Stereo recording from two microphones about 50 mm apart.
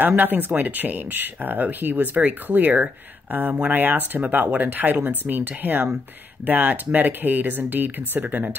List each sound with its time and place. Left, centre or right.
0.0 s speech: right